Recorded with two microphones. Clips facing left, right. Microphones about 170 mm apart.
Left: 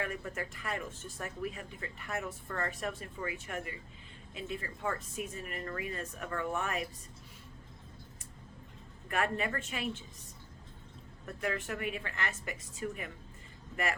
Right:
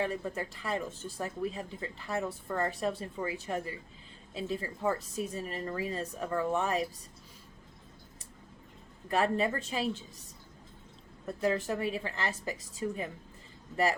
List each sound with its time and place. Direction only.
0.3 s a woman's voice: 30° right (ahead or behind)
9.0 s a woman's voice: 30° right (ahead or behind)
11.3 s a woman's voice: 35° right (ahead or behind)